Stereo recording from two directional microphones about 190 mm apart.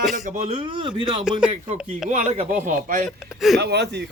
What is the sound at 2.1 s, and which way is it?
Speech, 35° right (ahead or behind).